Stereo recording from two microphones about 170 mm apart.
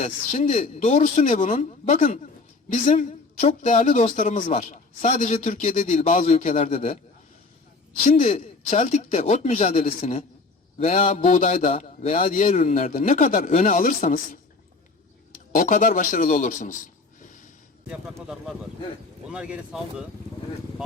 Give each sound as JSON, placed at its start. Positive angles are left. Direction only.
{"t": 0.0, "sound": "a woman's voice", "side_deg": 45}
{"t": 8.1, "sound": "a woman's voice", "side_deg": 45}
{"t": 12.3, "sound": "a woman's voice", "side_deg": 50}
{"t": 15.5, "sound": "a man's voice", "side_deg": 55}
{"t": 19.3, "sound": "speech", "side_deg": -5}